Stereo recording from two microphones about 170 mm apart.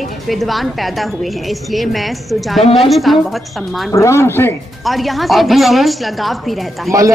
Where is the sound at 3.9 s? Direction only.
15° left (ahead or behind).